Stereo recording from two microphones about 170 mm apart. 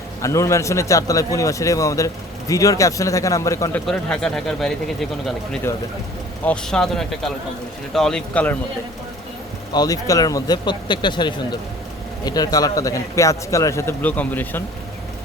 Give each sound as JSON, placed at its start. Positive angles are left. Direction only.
{"t": 0.2, "sound": "speech", "side_deg": 15}
{"t": 9.7, "sound": "speech", "side_deg": 20}